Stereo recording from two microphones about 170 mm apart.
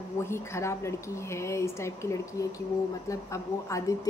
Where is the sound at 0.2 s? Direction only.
15° left (ahead or behind).